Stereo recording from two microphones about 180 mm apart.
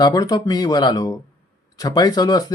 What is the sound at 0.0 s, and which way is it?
Speech, 20° left (ahead or behind).